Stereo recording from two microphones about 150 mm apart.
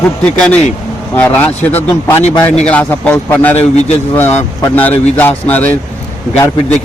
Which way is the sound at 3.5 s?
45° left (ahead or behind).